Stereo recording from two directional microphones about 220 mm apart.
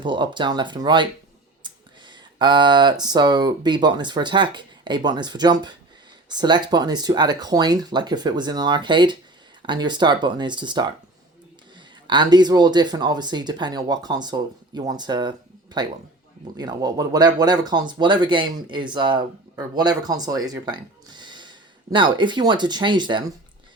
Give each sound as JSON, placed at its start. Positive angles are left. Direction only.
{"t": 0.0, "sound": "speech", "side_deg": -20}
{"t": 12.0, "sound": "speech", "side_deg": -20}